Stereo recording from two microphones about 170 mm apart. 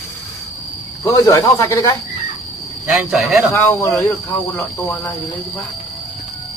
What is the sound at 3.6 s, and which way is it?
Speech, 15° left (ahead or behind).